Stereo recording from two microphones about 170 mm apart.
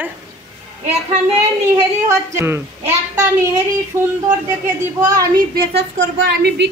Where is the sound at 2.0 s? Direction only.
15° right (ahead or behind).